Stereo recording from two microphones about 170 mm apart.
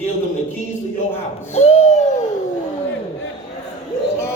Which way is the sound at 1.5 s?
40° left (ahead or behind).